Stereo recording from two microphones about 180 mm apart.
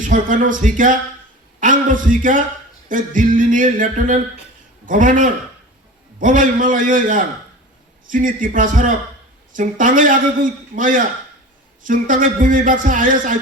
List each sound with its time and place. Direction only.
0.0 s a man's voice: 45° right (ahead or behind)